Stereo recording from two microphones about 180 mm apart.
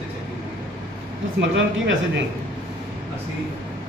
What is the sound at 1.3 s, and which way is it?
Speech, 90° right.